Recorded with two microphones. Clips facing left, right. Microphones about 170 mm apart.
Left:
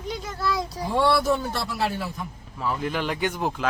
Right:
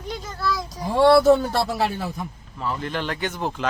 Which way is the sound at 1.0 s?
60° right (ahead or behind).